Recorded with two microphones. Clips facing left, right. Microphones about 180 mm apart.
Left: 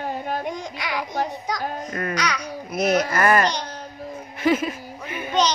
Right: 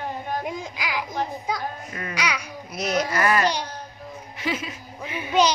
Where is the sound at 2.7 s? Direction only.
55° left (ahead or behind).